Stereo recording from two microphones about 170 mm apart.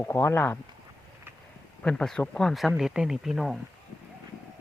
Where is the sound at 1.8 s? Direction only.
5° left (ahead or behind).